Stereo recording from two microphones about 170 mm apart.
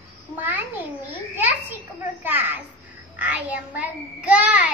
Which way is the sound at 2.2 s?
10° right (ahead or behind).